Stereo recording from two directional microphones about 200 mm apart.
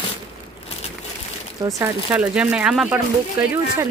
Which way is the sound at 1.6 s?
15° right (ahead or behind).